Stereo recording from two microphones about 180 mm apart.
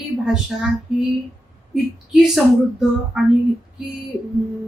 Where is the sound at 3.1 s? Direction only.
5° right (ahead or behind).